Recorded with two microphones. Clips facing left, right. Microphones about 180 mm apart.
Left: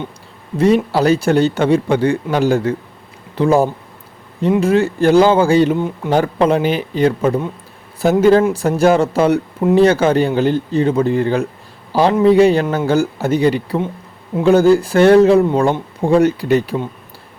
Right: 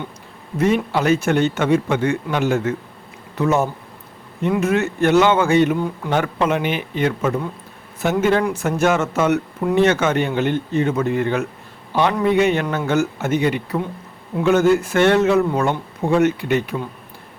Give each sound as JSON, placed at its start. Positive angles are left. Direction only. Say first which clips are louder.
{"t": 0.9, "sound": "speech", "louder": "left 4 dB", "side_deg": 35}
{"t": 6.1, "sound": "a man's voice", "louder": "left 6 dB", "side_deg": 35}